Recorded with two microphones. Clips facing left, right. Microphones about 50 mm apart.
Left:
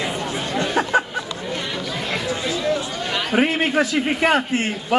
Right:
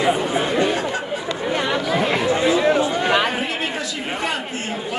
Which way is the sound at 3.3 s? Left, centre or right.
Left.